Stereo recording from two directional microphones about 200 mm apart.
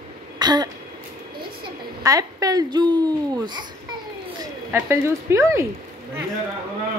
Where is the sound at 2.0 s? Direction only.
20° right (ahead or behind).